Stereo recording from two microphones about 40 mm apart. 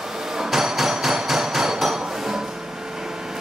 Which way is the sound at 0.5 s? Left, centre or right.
Centre.